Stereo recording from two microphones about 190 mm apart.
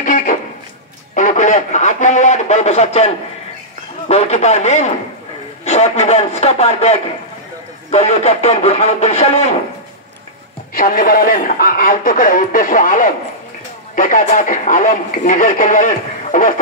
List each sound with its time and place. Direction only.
0.0 s a sound: 45° left (ahead or behind)
4.1 s speech: 35° left (ahead or behind)
10.7 s speech: 45° left (ahead or behind)